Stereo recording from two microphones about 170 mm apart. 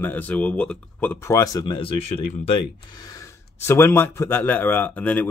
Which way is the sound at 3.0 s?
20° left (ahead or behind).